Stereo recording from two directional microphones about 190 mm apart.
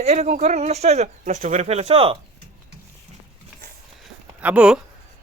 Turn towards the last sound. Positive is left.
turn(degrees=-5)  # may be behind; listen again after turning